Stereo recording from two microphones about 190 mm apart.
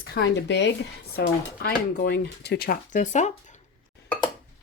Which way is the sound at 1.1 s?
55° left (ahead or behind).